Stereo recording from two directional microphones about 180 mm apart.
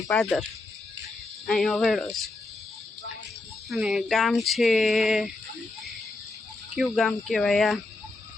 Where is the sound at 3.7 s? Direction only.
5° right (ahead or behind).